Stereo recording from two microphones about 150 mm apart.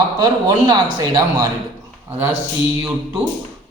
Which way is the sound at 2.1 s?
15° right (ahead or behind).